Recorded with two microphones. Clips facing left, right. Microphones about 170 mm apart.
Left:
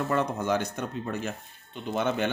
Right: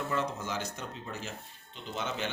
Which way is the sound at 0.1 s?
55° left (ahead or behind).